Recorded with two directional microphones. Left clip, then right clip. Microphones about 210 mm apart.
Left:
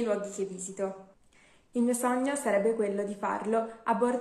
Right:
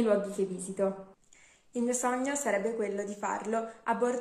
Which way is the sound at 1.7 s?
5° right (ahead or behind).